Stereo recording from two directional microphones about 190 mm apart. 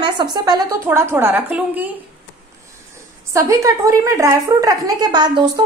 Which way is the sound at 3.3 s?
15° right (ahead or behind).